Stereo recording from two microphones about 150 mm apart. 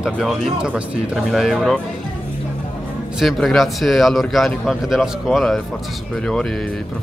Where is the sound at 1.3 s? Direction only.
Centre (ahead or behind).